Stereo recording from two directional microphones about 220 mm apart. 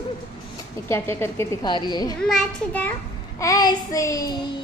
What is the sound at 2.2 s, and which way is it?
Speech, centre (ahead or behind).